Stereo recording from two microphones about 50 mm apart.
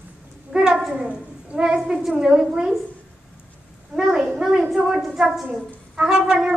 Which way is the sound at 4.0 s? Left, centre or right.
Centre.